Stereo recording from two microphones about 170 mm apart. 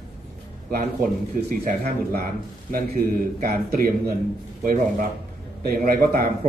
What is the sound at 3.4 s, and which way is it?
A man's voice, 60° right (ahead or behind).